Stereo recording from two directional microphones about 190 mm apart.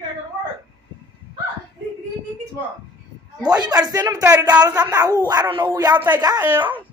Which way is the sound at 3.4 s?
20° right (ahead or behind).